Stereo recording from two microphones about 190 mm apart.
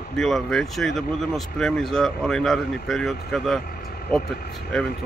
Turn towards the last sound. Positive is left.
turn(degrees=0)  # may be behind; listen again after turning